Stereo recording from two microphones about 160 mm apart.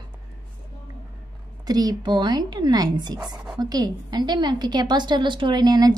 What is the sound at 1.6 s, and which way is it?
A woman's voice, 25° right (ahead or behind).